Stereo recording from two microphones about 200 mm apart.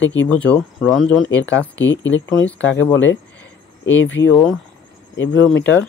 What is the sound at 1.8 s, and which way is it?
Speech, 70° left (ahead or behind).